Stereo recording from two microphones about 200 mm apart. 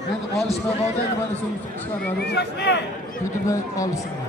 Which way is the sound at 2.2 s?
55° left (ahead or behind).